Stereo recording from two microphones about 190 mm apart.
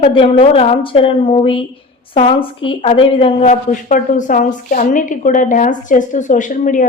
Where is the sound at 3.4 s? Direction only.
45° left (ahead or behind).